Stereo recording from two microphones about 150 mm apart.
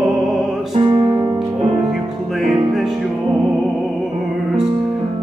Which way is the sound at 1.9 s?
Centre (ahead or behind).